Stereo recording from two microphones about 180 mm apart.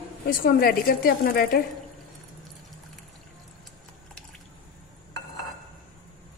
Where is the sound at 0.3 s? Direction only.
55° left (ahead or behind).